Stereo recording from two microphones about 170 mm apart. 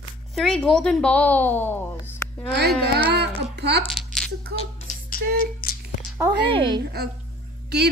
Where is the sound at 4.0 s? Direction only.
Centre (ahead or behind).